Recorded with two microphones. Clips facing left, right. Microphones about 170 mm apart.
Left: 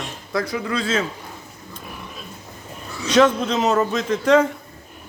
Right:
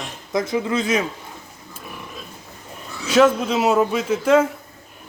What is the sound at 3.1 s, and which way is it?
A man's voice, 5° right (ahead or behind).